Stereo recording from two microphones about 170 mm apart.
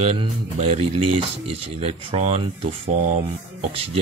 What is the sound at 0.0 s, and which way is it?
Speech, 40° right (ahead or behind).